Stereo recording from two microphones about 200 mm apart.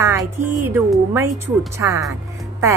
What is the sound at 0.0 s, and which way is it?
Music, 15° right (ahead or behind).